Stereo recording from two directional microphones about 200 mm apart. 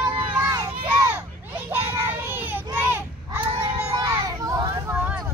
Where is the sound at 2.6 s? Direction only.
10° right (ahead or behind).